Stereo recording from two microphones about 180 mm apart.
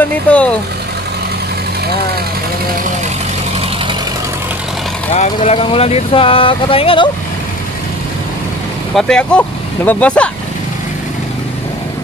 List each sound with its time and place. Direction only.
0.0 s speech: 5° left (ahead or behind)
5.1 s speech: 40° left (ahead or behind)
8.9 s speech: 5° left (ahead or behind)